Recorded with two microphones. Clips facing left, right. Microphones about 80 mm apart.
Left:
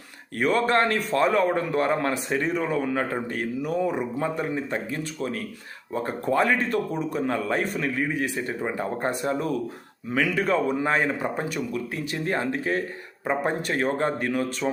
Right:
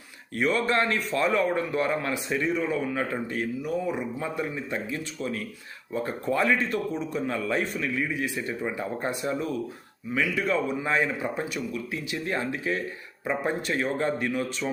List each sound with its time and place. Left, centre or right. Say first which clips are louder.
0.3 s a man's voice: left 3 dB; left